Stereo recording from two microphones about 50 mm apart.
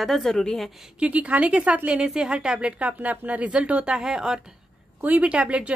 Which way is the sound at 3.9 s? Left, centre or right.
Centre.